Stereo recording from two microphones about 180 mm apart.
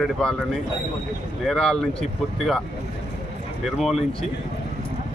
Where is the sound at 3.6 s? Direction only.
Centre (ahead or behind).